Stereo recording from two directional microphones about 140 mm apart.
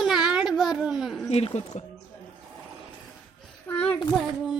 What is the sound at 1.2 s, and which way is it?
Speech, 45° left (ahead or behind).